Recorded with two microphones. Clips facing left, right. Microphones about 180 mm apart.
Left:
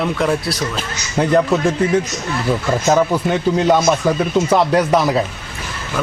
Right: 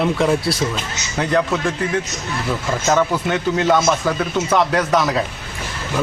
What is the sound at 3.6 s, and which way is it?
Speech, 25° left (ahead or behind).